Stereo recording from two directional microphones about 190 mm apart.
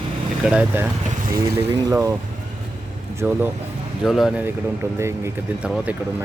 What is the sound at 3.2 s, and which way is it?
Speech, 10° right (ahead or behind).